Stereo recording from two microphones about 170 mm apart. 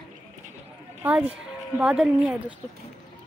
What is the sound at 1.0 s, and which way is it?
A woman's voice, 10° right (ahead or behind).